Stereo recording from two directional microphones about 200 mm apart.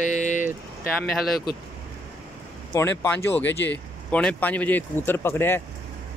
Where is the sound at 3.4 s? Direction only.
60° left (ahead or behind).